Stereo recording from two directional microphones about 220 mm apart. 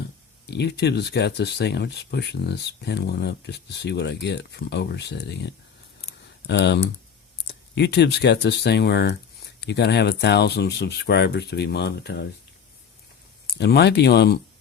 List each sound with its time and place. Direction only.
0.4 s speech: 50° left (ahead or behind)
13.6 s speech: 50° left (ahead or behind)